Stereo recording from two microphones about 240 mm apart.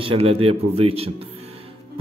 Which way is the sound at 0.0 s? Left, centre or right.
Right.